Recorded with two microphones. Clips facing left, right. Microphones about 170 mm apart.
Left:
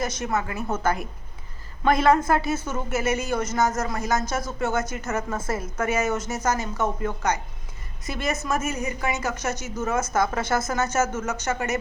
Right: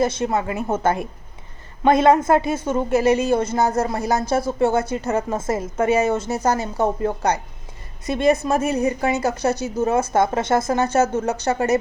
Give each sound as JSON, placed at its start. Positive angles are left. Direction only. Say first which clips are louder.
{"t": 0.0, "sound": "a woman's voice", "louder": "right 6 dB", "side_deg": -30}